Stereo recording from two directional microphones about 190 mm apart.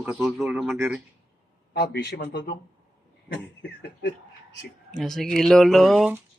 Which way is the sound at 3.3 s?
65° left (ahead or behind).